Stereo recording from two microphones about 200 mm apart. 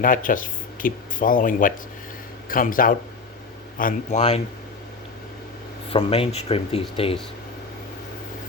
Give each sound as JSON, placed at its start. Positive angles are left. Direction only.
{"t": 0.0, "sound": "a man's voice", "side_deg": 45}
{"t": 5.9, "sound": "speech", "side_deg": 30}